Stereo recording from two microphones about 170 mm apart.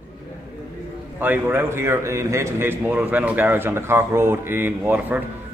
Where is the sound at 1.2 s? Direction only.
10° right (ahead or behind).